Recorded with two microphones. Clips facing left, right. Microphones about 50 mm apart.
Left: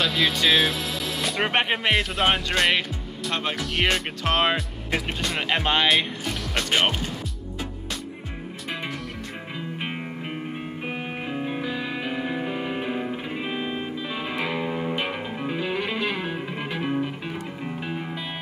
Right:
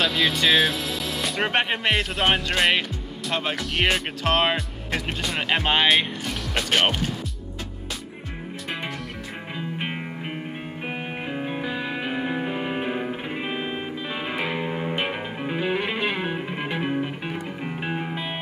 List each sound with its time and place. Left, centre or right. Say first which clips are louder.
0.0 s speech: right 1 dB; centre
9.6 s music: right 2 dB; centre